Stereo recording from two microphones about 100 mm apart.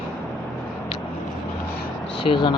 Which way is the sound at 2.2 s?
55° left (ahead or behind).